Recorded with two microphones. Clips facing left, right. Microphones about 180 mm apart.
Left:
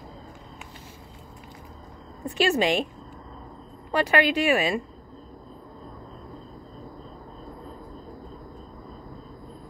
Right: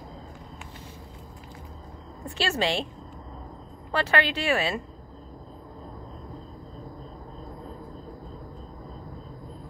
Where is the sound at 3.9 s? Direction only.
15° left (ahead or behind).